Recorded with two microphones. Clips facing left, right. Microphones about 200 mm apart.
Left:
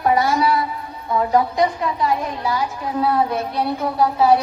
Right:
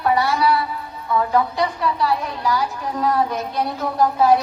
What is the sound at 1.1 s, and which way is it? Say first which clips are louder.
Speech: left 1 dB; 25° left (ahead or behind).